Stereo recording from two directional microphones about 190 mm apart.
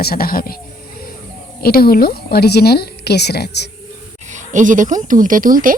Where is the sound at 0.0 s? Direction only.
50° left (ahead or behind).